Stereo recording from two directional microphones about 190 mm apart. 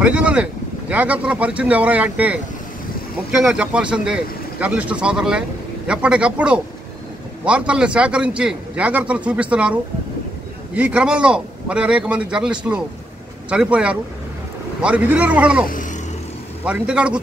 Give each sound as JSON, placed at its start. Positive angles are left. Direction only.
{"t": 0.0, "sound": "a man's voice", "side_deg": -5}
{"t": 15.7, "sound": "a sound", "side_deg": 45}
{"t": 16.6, "sound": "a man's voice", "side_deg": -5}